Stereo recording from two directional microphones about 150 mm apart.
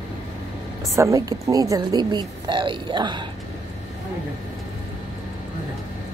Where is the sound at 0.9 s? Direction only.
20° right (ahead or behind).